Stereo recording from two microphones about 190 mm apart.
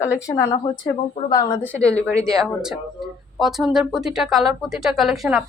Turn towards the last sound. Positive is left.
turn(degrees=0)  # may be behind; listen again after turning